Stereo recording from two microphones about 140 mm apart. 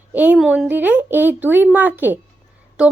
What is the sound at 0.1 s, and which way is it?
A woman's voice, 10° right (ahead or behind).